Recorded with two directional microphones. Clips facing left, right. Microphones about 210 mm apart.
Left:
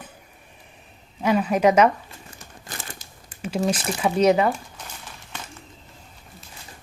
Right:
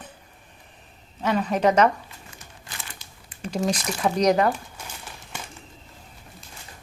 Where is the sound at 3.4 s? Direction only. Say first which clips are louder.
Left 2 dB; 5° left (ahead or behind).